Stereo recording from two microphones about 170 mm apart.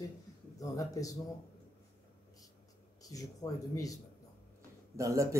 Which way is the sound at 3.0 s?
20° left (ahead or behind).